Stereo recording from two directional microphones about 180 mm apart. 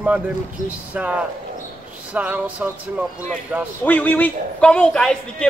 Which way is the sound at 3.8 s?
10° left (ahead or behind).